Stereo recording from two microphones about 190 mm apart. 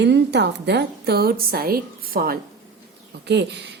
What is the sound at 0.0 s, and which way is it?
A woman's voice, 65° right (ahead or behind).